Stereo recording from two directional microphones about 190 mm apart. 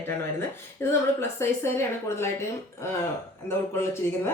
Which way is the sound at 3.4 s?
15° left (ahead or behind).